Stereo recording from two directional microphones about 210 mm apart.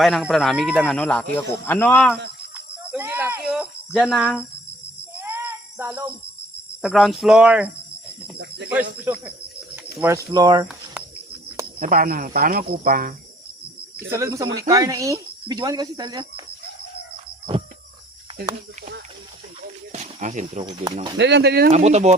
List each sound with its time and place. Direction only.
0.0 s speech: centre (ahead or behind)
2.6 s speech: 10° right (ahead or behind)
5.1 s a sound: 10° right (ahead or behind)
6.8 s speech: centre (ahead or behind)
8.4 s speech: 50° right (ahead or behind)
9.0 s speech: 5° right (ahead or behind)
10.3 s speech: 20° right (ahead or behind)
11.8 s a man's voice: 45° right (ahead or behind)
14.1 s speech: 15° right (ahead or behind)
19.9 s cricket: 35° right (ahead or behind)
20.7 s speech: 25° right (ahead or behind)
21.2 s a man's voice: 55° right (ahead or behind)
21.7 s speech: 30° right (ahead or behind)